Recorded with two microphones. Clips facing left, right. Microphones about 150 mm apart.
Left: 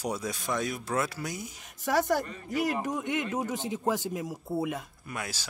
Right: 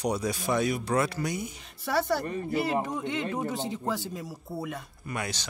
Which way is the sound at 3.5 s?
15° left (ahead or behind).